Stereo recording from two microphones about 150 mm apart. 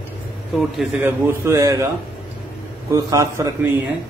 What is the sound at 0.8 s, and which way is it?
Speech, 10° right (ahead or behind).